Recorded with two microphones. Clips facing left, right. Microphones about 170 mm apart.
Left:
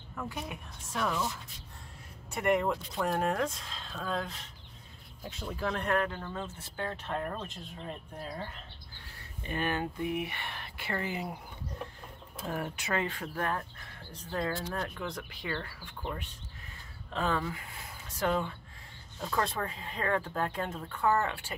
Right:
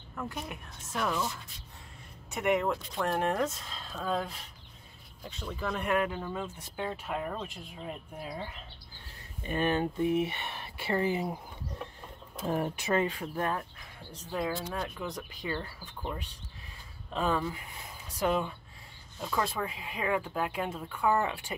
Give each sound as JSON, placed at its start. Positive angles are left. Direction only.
{"t": 0.1, "sound": "speech", "side_deg": 0}
{"t": 2.3, "sound": "speech", "side_deg": 0}
{"t": 9.4, "sound": "speech", "side_deg": -20}
{"t": 12.4, "sound": "speech", "side_deg": -25}
{"t": 13.7, "sound": "a sound", "side_deg": -10}
{"t": 14.3, "sound": "speech", "side_deg": -10}
{"t": 17.1, "sound": "speech", "side_deg": -15}